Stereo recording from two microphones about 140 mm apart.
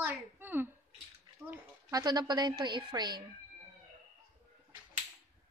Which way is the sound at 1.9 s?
30° right (ahead or behind).